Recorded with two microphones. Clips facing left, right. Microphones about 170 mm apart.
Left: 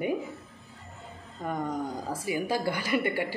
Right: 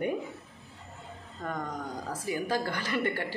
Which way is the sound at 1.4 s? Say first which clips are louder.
Left 4 dB; 10° left (ahead or behind).